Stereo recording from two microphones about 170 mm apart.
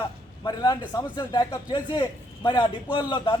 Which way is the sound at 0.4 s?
25° left (ahead or behind).